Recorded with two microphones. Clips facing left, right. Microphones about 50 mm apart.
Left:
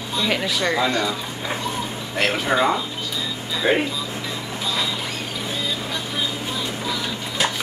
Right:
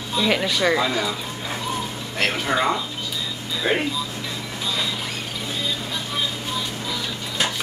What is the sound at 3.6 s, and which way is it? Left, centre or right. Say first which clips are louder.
Speech: left 3 dB; left.